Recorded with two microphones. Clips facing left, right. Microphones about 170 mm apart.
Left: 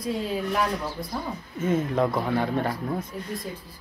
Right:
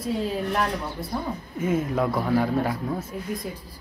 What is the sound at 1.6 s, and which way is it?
A man's voice, 10° right (ahead or behind).